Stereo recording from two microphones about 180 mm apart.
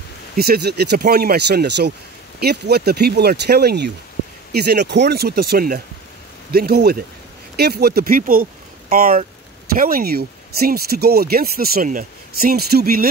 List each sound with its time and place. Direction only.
0.4 s speech: 65° right (ahead or behind)